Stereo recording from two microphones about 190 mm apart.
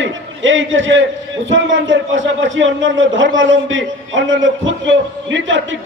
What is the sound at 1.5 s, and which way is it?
A man's voice, 80° right.